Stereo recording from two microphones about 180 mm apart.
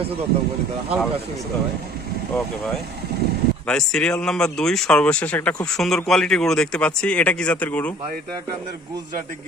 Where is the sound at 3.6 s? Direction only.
5° left (ahead or behind).